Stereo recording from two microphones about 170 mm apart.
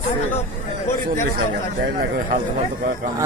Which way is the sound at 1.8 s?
60° right (ahead or behind).